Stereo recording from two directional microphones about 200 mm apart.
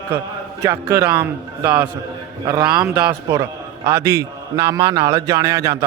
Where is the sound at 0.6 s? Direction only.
15° right (ahead or behind).